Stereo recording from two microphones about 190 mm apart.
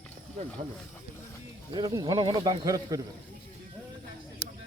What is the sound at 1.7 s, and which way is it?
Speech, 20° right (ahead or behind).